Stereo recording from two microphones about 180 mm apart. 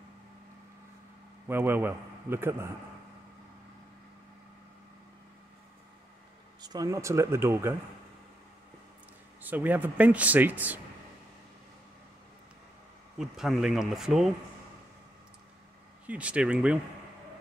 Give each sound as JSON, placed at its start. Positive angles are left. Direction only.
{"t": 1.5, "sound": "speech", "side_deg": -10}
{"t": 6.6, "sound": "speech", "side_deg": -20}
{"t": 9.4, "sound": "speech", "side_deg": -10}
{"t": 13.2, "sound": "speech", "side_deg": 0}
{"t": 16.1, "sound": "speech", "side_deg": -5}